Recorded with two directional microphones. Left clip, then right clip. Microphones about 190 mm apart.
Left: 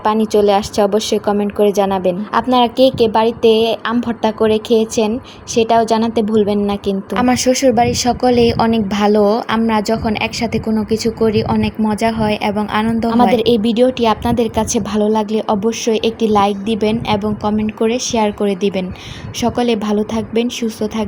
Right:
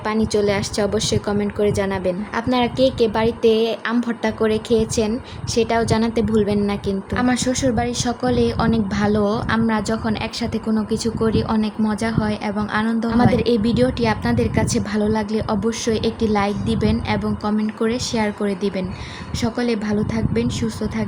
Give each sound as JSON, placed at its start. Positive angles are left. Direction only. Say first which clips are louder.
{"t": 0.0, "sound": "a woman's voice", "louder": "left 7 dB", "side_deg": 15}